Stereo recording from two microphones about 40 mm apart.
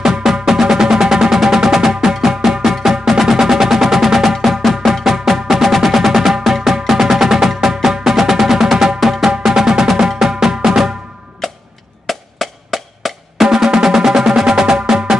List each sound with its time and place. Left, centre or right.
0.0 s music: centre
11.4 s tick-tock: centre
12.1 s drum: centre
13.8 s music: centre